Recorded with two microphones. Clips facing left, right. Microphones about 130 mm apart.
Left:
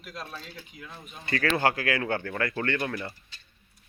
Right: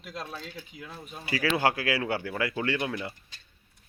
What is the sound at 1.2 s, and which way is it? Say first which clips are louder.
Speech: left 1 dB; 5° right (ahead or behind).